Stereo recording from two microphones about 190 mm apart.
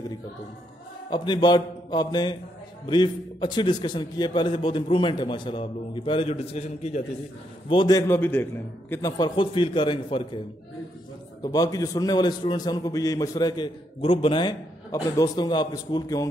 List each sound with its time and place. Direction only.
1.1 s a man's voice: 25° left (ahead or behind)
8.1 s a man's voice: 10° left (ahead or behind)
9.1 s a man's voice: 20° left (ahead or behind)
11.4 s a man's voice: 20° left (ahead or behind)